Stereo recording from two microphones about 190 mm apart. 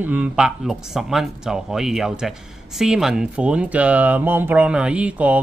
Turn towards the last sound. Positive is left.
turn(degrees=-5)  # may be behind; listen again after turning